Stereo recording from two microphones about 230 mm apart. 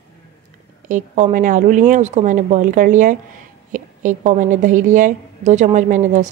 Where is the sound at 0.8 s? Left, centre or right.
Right.